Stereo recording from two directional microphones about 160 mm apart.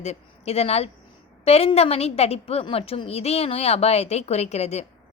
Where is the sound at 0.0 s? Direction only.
40° left (ahead or behind).